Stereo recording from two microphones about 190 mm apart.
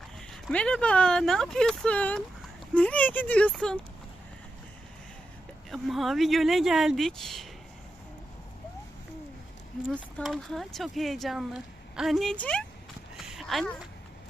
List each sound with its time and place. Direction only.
0.2 s speech: 5° left (ahead or behind)
5.7 s speech: centre (ahead or behind)
9.9 s speech: 5° left (ahead or behind)
13.1 s a sound: centre (ahead or behind)